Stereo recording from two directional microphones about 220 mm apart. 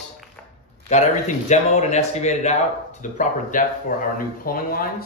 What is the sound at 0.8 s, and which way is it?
A man's voice, 30° left (ahead or behind).